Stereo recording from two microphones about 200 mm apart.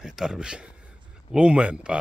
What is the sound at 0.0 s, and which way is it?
Speech, centre (ahead or behind).